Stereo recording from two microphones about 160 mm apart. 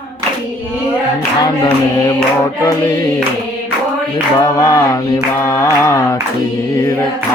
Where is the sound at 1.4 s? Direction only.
25° left (ahead or behind).